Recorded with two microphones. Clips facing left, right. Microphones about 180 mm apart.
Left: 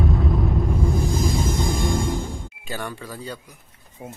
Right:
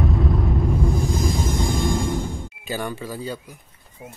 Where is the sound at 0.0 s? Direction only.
Centre (ahead or behind).